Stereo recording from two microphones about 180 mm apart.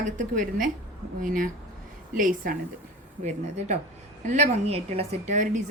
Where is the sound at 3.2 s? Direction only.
35° right (ahead or behind).